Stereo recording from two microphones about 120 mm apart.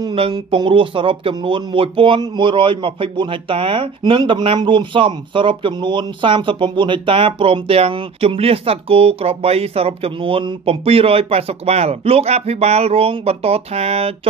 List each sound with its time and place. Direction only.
0.5 s speech: 45° right (ahead or behind)